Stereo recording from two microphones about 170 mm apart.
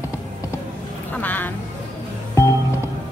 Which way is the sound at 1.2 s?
10° left (ahead or behind).